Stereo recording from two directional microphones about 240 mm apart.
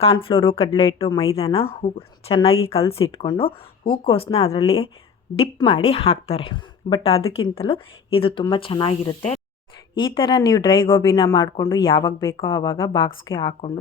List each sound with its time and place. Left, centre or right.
0.0 s a woman's voice: left